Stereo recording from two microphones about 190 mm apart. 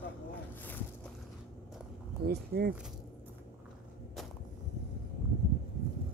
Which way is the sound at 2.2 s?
55° right (ahead or behind).